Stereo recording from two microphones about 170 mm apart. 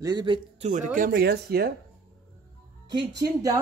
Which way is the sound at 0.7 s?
50° right (ahead or behind).